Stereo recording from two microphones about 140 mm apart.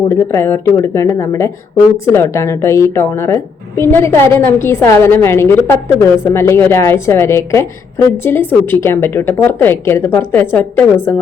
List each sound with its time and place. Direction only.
0.1 s a woman's voice: 20° left (ahead or behind)